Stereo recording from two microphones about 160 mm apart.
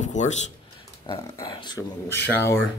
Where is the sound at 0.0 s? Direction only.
50° left (ahead or behind).